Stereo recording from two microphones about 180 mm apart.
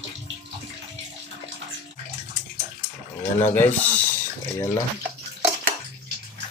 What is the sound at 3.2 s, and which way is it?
Speech, 10° left (ahead or behind).